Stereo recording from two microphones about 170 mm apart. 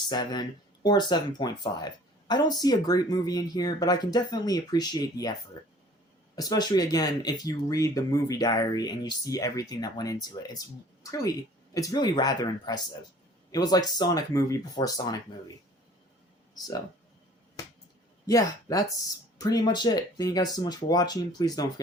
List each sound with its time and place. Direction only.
0.1 s speech: 25° left (ahead or behind)
6.3 s speech: 25° left (ahead or behind)
18.3 s speech: 20° left (ahead or behind)